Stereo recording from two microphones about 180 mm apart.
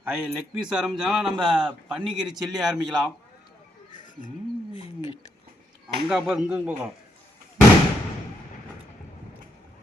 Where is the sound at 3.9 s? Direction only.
45° left (ahead or behind).